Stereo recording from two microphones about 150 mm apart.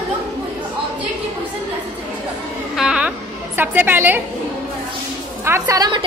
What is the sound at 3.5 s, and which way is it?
Speech, 15° right (ahead or behind).